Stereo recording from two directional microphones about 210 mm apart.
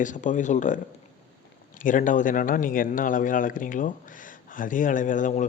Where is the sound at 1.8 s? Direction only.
40° left (ahead or behind).